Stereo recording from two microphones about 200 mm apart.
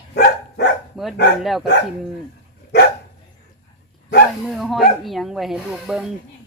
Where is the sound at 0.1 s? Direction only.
55° left (ahead or behind).